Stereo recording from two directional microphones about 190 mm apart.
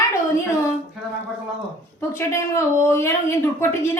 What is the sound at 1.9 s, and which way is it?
Speech, 15° left (ahead or behind).